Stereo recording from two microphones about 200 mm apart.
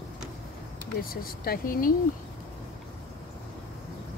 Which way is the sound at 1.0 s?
45° left (ahead or behind).